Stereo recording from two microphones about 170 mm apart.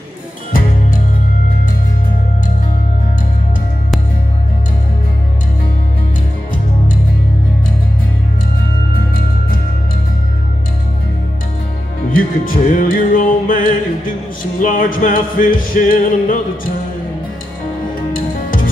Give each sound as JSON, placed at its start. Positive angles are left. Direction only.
{"t": 12.1, "sound": "music", "side_deg": 55}
{"t": 18.1, "sound": "music", "side_deg": 55}